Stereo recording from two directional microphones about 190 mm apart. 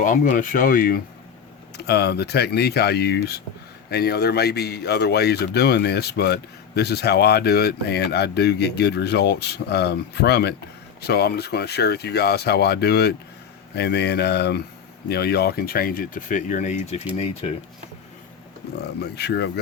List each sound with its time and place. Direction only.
0.0 s speech: 45° left (ahead or behind)
1.7 s speech: 60° left (ahead or behind); by 17.5 s 30° left (ahead or behind)
18.8 s speech: 60° left (ahead or behind)